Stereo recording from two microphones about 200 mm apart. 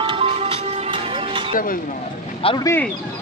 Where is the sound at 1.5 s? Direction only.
45° left (ahead or behind).